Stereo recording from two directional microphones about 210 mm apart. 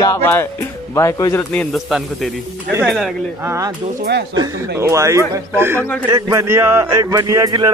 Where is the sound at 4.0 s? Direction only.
50° right (ahead or behind).